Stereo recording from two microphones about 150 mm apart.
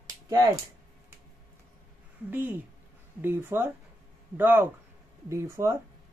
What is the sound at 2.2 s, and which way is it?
Speech, 10° right (ahead or behind).